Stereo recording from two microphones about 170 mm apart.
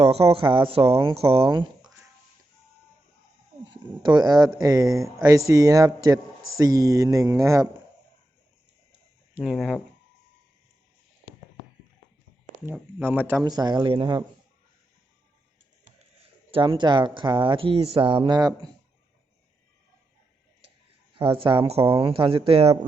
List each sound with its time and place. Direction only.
0.0 s speech: 35° right (ahead or behind)
4.0 s speech: 25° right (ahead or behind)
9.3 s speech: centre (ahead or behind)
12.6 s speech: 15° right (ahead or behind)
13.4 s speech: 25° right (ahead or behind)
16.5 s speech: 30° right (ahead or behind)
21.2 s speech: 30° right (ahead or behind)